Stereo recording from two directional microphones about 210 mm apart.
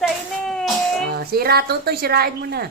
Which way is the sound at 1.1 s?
45° right (ahead or behind).